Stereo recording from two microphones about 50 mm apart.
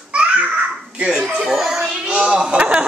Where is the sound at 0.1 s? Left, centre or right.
Right.